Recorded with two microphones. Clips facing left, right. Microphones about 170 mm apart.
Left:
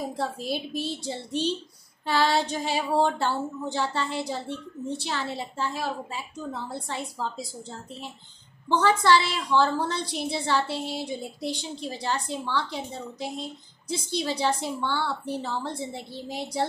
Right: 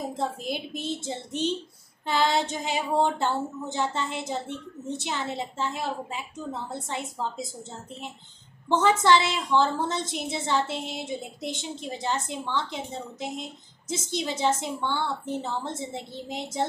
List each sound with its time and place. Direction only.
0.2 s a woman's voice: 20° right (ahead or behind)